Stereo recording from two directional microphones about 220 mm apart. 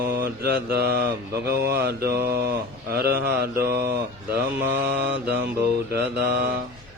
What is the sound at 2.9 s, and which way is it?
Speech, 45° right (ahead or behind).